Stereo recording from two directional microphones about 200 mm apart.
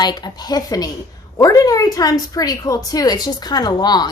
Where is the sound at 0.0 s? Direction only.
20° left (ahead or behind).